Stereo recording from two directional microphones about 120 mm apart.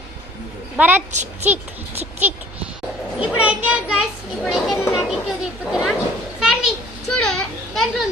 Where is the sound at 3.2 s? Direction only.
10° right (ahead or behind).